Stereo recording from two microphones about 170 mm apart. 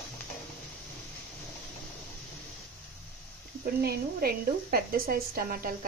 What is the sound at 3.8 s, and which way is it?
A woman's voice, 65° right (ahead or behind).